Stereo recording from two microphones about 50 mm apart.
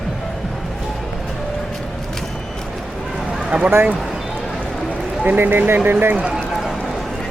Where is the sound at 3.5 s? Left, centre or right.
Right.